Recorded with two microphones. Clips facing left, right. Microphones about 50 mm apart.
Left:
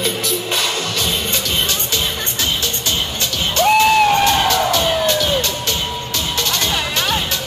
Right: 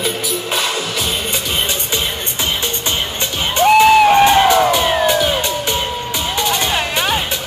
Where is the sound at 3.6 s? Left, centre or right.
Centre.